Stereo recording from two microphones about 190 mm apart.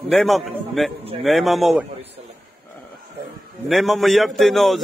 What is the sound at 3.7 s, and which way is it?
A man's voice, centre (ahead or behind).